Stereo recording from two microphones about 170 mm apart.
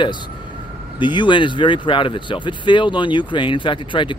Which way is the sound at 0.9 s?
30° left (ahead or behind).